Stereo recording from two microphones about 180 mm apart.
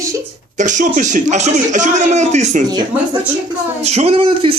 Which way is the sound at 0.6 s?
45° right (ahead or behind).